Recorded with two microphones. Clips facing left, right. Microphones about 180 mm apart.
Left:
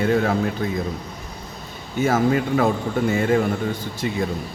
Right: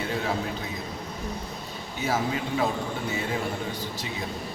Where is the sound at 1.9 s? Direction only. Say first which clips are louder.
Left 9 dB; 50° left (ahead or behind).